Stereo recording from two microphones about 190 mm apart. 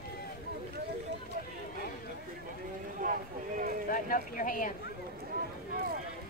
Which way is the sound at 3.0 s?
45° right (ahead or behind).